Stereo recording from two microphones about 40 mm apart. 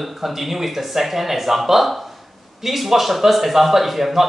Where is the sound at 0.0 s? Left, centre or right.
Centre.